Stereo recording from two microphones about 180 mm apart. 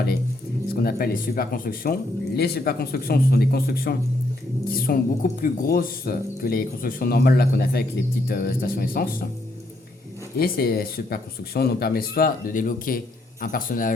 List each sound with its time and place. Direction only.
0.7 s speech: 55° left (ahead or behind)
10.3 s a man's voice: 60° left (ahead or behind)